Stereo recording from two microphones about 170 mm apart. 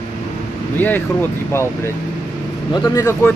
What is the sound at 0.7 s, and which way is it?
Speech, 10° left (ahead or behind).